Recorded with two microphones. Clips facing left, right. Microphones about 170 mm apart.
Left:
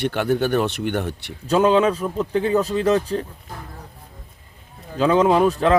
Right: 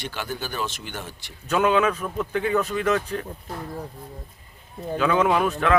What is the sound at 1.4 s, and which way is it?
A man's voice, 30° left (ahead or behind).